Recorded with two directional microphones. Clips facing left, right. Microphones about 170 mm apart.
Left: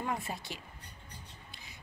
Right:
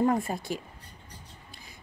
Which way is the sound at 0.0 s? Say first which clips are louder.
Right 11 dB; 45° right (ahead or behind).